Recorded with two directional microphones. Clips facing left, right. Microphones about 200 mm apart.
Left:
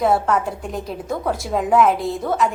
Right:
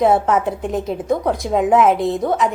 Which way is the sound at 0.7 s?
25° right (ahead or behind).